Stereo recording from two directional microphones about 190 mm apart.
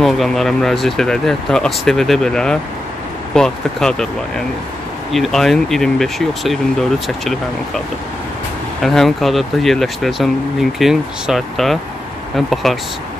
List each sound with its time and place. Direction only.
0.0 s speech: centre (ahead or behind)
5.1 s speech: centre (ahead or behind)
8.8 s speech: centre (ahead or behind)